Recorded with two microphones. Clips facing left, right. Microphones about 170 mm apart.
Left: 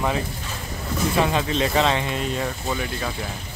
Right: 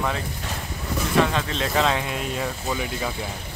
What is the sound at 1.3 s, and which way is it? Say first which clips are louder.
Speech: left 3 dB; 5° left (ahead or behind).